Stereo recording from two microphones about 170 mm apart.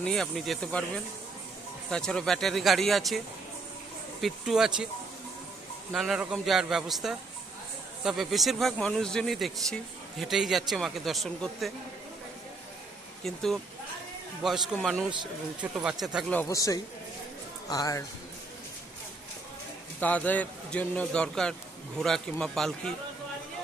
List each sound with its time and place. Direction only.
0.0 s speech: 5° left (ahead or behind)
4.2 s speech: centre (ahead or behind)
5.9 s speech: centre (ahead or behind)
13.2 s speech: centre (ahead or behind)
16.3 s speech: 15° left (ahead or behind)
20.0 s a man's voice: 10° left (ahead or behind)